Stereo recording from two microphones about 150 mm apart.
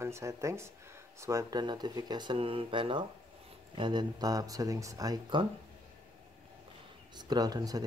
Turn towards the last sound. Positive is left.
turn(degrees=-25)  # may be behind; listen again after turning